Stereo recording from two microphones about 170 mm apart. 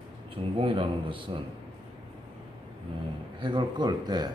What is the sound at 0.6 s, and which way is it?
Speech, 30° right (ahead or behind).